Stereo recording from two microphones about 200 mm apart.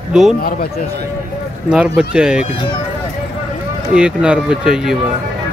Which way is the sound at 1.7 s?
5° right (ahead or behind).